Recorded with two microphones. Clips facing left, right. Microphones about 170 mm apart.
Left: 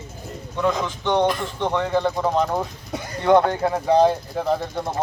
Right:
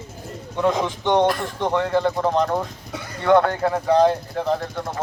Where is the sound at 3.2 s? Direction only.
20° left (ahead or behind).